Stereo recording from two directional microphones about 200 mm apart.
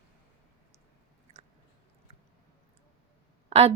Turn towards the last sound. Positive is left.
turn(degrees=-30)  # may be behind; listen again after turning